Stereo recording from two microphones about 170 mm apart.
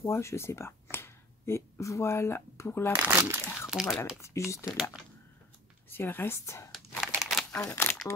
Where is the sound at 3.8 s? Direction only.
15° left (ahead or behind).